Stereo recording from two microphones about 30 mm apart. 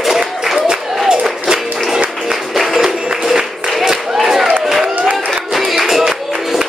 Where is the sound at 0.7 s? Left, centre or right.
Right.